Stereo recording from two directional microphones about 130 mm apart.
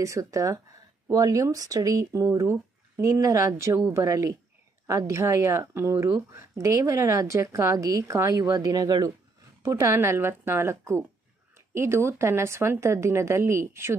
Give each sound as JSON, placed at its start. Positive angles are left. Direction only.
{"t": 0.0, "sound": "speech", "side_deg": -25}